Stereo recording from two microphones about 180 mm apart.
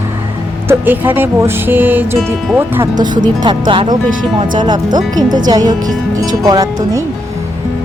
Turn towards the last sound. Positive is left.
turn(degrees=-20)  # may be behind; listen again after turning